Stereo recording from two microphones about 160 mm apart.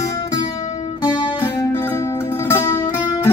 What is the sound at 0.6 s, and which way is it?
Music, 50° left (ahead or behind).